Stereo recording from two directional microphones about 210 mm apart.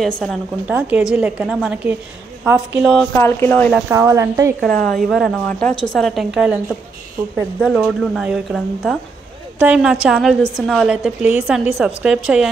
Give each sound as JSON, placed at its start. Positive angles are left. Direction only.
{"t": 0.0, "sound": "a woman's voice", "side_deg": 0}
{"t": 3.2, "sound": "speech", "side_deg": 10}
{"t": 3.9, "sound": "speech", "side_deg": -15}
{"t": 4.6, "sound": "a woman's voice", "side_deg": 5}